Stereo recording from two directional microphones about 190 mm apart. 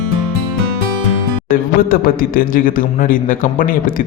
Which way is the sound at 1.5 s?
50° left (ahead or behind).